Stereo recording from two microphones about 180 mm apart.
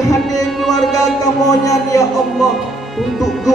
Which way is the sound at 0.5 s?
Centre (ahead or behind).